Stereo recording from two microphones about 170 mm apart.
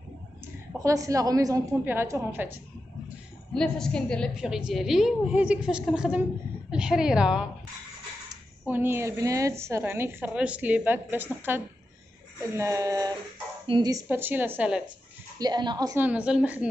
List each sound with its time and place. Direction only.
0.7 s a woman's voice: 20° right (ahead or behind)
3.5 s a woman's voice: 5° left (ahead or behind)
8.6 s a woman's voice: 10° right (ahead or behind)
15.3 s a woman's voice: 25° right (ahead or behind)
16.0 s a woman's voice: 10° right (ahead or behind)